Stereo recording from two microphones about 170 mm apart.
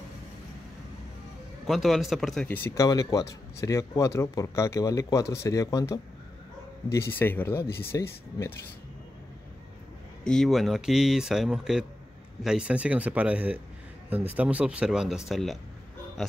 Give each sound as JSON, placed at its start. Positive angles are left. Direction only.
{"t": 1.7, "sound": "speech", "side_deg": 0}
{"t": 2.4, "sound": "speech", "side_deg": 10}
{"t": 10.2, "sound": "speech", "side_deg": 5}
{"t": 16.2, "sound": "oink", "side_deg": 0}